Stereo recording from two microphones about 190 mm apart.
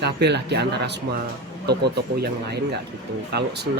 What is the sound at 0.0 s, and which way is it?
Speech, 60° right (ahead or behind).